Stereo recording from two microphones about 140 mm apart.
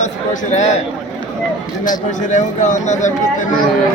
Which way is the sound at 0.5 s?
55° left (ahead or behind).